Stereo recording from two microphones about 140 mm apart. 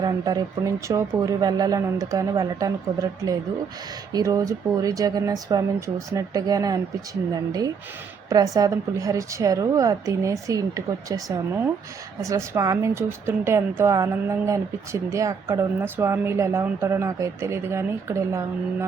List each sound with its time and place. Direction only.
0.0 s speech: 30° right (ahead or behind)